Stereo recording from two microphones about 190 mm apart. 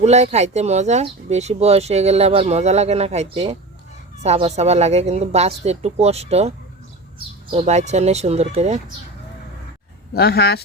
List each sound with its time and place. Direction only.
0.0 s speech: 35° right (ahead or behind)
7.5 s speech: 35° right (ahead or behind)
10.2 s speech: 55° left (ahead or behind)